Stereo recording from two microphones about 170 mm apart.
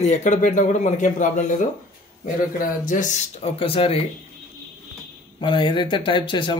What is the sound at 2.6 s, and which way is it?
Speech, 50° left (ahead or behind).